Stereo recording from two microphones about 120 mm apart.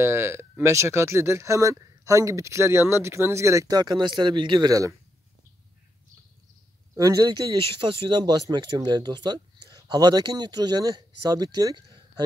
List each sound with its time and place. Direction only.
0.0 s speech: 20° right (ahead or behind)
7.0 s speech: 30° right (ahead or behind)